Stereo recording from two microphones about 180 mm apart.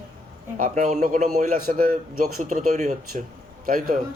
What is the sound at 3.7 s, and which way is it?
Speech, 50° right (ahead or behind).